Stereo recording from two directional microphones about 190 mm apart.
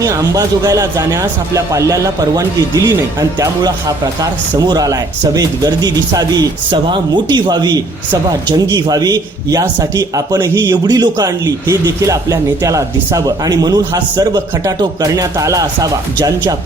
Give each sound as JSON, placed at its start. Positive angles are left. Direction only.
{"t": 0.0, "sound": "speech", "side_deg": -15}